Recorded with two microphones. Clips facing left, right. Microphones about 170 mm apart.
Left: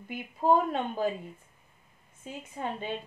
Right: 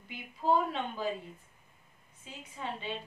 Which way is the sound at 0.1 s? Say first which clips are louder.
Left 4 dB; 50° left (ahead or behind).